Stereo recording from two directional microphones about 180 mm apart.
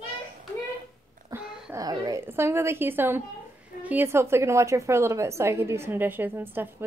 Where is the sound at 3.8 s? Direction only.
10° right (ahead or behind).